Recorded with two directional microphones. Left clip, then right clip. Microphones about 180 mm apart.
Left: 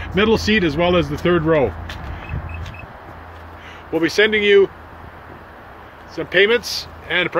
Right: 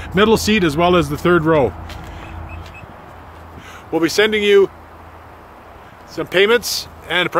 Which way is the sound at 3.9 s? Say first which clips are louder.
Right 1 dB; 30° right (ahead or behind).